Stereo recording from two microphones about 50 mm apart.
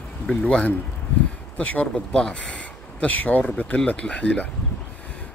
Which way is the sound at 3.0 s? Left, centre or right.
Left.